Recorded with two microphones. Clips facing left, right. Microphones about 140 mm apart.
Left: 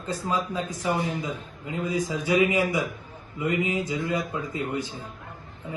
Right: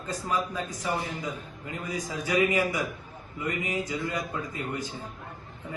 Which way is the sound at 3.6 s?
20° left (ahead or behind).